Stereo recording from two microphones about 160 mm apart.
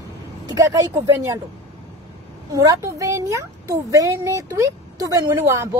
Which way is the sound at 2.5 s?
20° right (ahead or behind).